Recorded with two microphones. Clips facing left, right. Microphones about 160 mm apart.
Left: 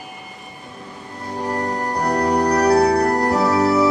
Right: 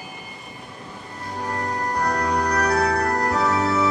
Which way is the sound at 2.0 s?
35° left (ahead or behind).